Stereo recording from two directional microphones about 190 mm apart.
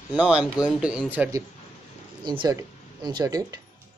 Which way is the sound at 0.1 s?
5° right (ahead or behind).